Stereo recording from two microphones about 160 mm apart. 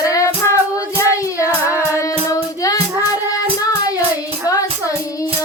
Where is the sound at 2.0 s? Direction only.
20° left (ahead or behind).